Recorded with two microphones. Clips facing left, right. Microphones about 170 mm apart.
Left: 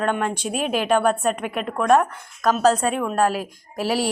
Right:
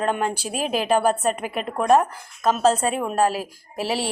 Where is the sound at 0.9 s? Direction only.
35° right (ahead or behind).